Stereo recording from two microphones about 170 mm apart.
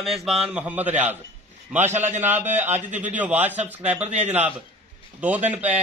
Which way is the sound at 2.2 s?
10° right (ahead or behind).